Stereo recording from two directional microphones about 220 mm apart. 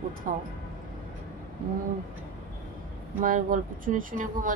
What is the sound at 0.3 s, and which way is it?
Speech, 35° right (ahead or behind).